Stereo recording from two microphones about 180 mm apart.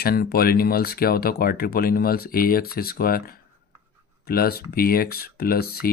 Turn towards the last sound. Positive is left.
turn(degrees=60)  # may be behind; listen again after turning